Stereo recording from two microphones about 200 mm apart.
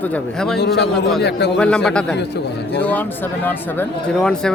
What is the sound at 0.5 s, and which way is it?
Speech, 55° left (ahead or behind).